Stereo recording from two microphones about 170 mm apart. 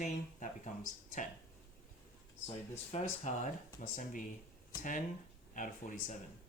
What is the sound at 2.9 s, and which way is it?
Speech, 45° left (ahead or behind).